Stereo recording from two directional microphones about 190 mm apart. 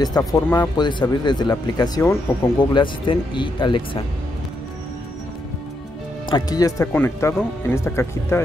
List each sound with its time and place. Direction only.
0.0 s speech: 20° left (ahead or behind)
6.2 s speech: 20° left (ahead or behind)